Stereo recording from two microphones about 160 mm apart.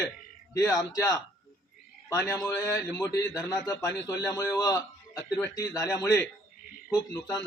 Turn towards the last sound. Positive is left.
turn(degrees=20)  # may be behind; listen again after turning